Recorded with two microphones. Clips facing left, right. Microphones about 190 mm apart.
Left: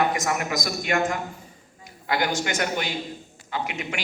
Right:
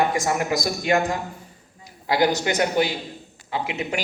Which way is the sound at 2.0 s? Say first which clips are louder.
Right 5 dB; 20° right (ahead or behind).